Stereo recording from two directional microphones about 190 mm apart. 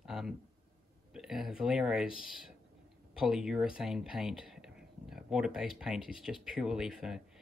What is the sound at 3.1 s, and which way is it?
Speech, 5° right (ahead or behind).